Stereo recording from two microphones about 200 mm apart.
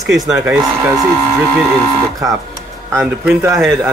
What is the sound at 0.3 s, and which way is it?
Speech, 5° right (ahead or behind).